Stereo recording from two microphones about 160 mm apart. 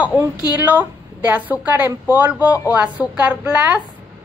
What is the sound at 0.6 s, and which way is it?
A woman's voice, 10° right (ahead or behind).